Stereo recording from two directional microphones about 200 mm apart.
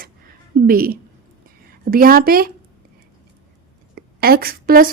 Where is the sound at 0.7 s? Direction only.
45° right (ahead or behind).